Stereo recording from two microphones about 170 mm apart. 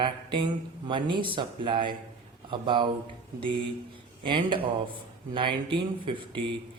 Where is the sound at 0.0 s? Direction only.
30° right (ahead or behind).